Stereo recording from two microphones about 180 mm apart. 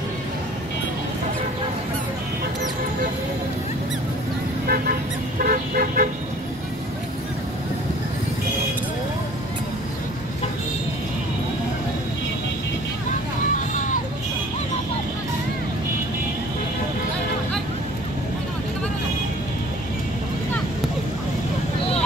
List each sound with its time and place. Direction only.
4.6 s vehicle: 55° right (ahead or behind)